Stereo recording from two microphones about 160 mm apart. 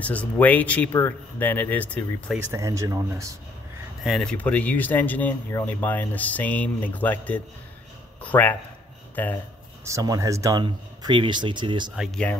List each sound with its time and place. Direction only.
0.0 s speech: 10° left (ahead or behind)
2.3 s speech: 20° right (ahead or behind)
4.0 s speech: centre (ahead or behind)
9.8 s speech: 20° right (ahead or behind)